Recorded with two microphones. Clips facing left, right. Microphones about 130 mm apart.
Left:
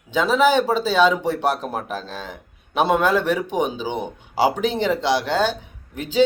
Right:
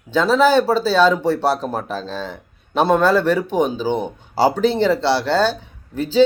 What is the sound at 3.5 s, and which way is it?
Speech, 40° right (ahead or behind).